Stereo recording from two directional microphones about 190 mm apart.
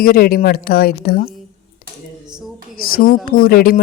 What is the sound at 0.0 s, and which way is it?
A woman's voice, 50° left (ahead or behind).